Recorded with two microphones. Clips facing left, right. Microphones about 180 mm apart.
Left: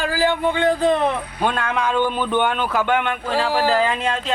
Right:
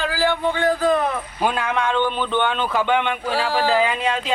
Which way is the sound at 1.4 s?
5° right (ahead or behind).